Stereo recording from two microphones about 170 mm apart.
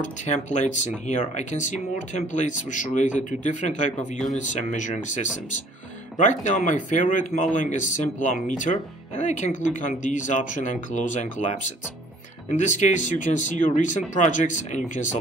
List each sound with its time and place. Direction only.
0.3 s speech: 45° left (ahead or behind)